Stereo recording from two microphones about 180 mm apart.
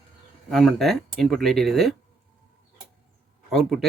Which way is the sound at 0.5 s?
Centre (ahead or behind).